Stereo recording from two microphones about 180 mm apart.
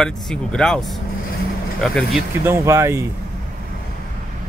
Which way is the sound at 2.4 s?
15° right (ahead or behind).